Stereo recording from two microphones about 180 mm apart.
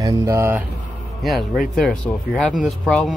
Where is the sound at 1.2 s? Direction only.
Centre (ahead or behind).